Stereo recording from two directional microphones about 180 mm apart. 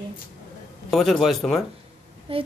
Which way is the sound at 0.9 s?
Centre (ahead or behind).